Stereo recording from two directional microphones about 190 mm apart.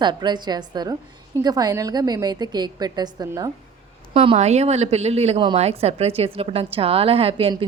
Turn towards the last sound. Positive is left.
turn(degrees=-30)  # may be behind; listen again after turning